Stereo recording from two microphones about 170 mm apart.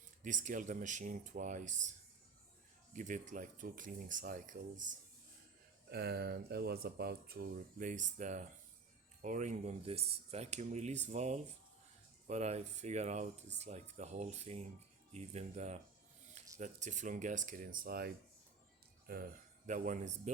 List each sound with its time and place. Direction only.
0.2 s speech: 45° right (ahead or behind)
2.9 s speech: 45° right (ahead or behind)
5.9 s speech: 70° right (ahead or behind); by 20.3 s 45° right (ahead or behind)